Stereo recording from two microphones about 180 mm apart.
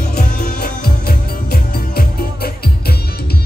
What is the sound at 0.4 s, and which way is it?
Music, 60° left (ahead or behind).